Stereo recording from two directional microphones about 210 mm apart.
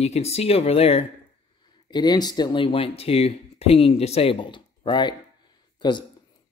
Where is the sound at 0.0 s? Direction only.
30° left (ahead or behind).